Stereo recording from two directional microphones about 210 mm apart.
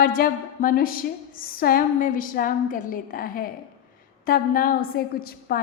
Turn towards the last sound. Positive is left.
turn(degrees=45)  # may be behind; listen again after turning